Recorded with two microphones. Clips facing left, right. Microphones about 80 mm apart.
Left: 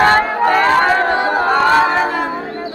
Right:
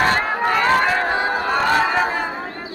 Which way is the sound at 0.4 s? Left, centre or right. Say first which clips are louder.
Left 4 dB; left.